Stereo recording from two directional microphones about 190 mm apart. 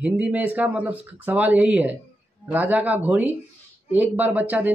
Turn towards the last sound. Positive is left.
turn(degrees=-10)  # may be behind; listen again after turning